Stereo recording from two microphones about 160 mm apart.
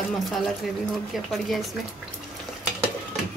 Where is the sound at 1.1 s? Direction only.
Centre (ahead or behind).